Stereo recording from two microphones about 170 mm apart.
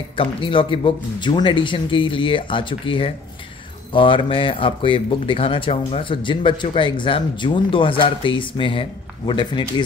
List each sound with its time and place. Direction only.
0.1 s speech: 30° left (ahead or behind)